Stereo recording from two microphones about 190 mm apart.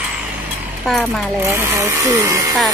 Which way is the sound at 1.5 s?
15° right (ahead or behind).